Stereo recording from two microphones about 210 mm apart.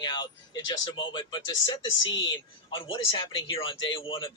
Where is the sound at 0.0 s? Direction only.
20° left (ahead or behind).